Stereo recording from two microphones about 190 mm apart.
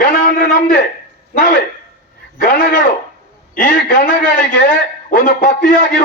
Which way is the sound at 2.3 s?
45° left (ahead or behind).